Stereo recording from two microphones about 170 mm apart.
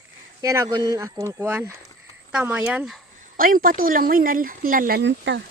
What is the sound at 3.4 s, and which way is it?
Speech, 55° right (ahead or behind).